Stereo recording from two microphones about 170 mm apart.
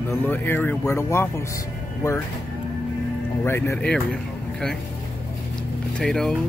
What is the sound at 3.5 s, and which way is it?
Speech, 15° left (ahead or behind).